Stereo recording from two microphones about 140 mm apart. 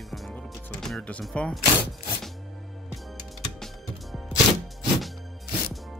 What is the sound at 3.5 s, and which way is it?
Music, centre (ahead or behind).